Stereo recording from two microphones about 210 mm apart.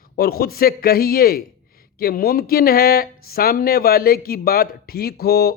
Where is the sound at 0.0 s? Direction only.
45° left (ahead or behind).